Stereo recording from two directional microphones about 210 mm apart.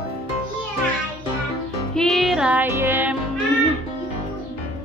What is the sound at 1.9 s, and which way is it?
Music, 5° left (ahead or behind).